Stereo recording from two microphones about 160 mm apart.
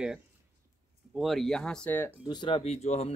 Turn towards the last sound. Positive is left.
turn(degrees=40)  # may be behind; listen again after turning